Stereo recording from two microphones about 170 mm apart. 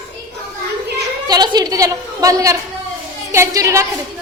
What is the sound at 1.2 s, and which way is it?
A woman's voice, 25° right (ahead or behind).